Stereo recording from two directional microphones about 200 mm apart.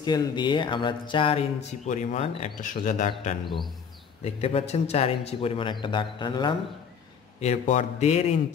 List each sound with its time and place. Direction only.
0.0 s speech: 20° left (ahead or behind)
7.3 s a man's voice: 35° left (ahead or behind)